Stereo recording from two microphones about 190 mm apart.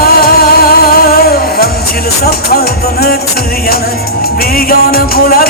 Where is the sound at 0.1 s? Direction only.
55° left (ahead or behind).